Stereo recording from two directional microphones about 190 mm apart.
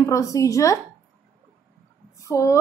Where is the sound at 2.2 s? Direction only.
15° left (ahead or behind).